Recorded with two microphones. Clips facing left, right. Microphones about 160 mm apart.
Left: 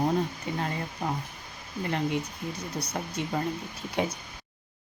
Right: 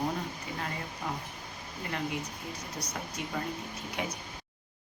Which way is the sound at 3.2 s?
25° left (ahead or behind).